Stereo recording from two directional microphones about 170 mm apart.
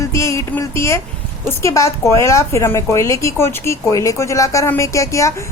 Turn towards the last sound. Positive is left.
turn(degrees=20)  # may be behind; listen again after turning